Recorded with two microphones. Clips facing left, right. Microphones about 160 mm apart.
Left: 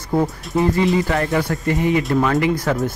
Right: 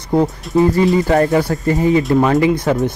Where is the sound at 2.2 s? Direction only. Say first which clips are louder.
Right 4 dB; 25° right (ahead or behind).